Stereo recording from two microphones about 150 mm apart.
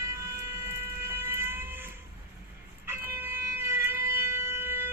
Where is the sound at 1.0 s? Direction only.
15° right (ahead or behind).